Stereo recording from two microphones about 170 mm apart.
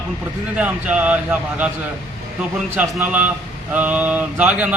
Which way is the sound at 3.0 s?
10° right (ahead or behind).